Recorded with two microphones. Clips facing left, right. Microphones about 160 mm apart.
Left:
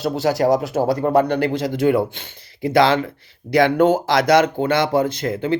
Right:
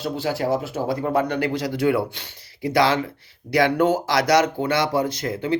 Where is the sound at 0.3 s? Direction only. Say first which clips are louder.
Left 6 dB; 40° left (ahead or behind).